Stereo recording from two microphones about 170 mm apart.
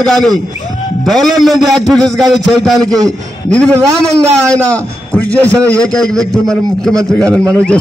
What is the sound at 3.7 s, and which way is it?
Speech, 15° right (ahead or behind).